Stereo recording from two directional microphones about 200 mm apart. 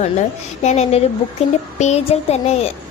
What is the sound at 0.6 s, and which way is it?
A woman's voice, 35° left (ahead or behind).